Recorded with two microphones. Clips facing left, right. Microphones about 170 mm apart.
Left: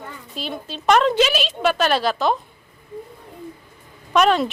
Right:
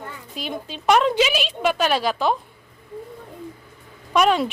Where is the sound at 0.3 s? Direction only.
15° right (ahead or behind).